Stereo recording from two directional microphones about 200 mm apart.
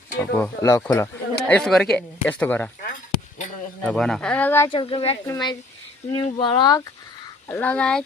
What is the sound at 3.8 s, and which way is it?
Speech, 5° left (ahead or behind).